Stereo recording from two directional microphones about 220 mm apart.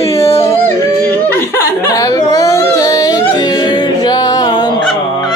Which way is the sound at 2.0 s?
15° left (ahead or behind).